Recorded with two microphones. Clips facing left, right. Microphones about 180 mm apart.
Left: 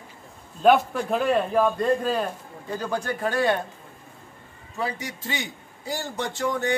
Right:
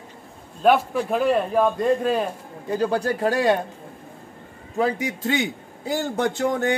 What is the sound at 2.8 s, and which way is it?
Speech, 35° right (ahead or behind).